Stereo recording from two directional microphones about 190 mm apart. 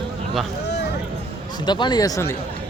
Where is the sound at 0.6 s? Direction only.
65° left (ahead or behind).